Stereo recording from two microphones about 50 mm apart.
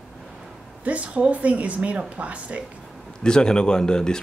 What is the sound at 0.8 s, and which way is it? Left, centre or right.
Speech, right.